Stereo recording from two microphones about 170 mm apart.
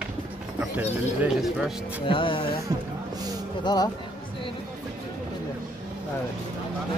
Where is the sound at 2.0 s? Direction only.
30° left (ahead or behind).